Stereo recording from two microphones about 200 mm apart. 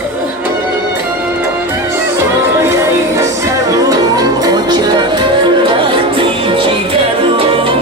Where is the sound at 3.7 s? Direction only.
15° right (ahead or behind).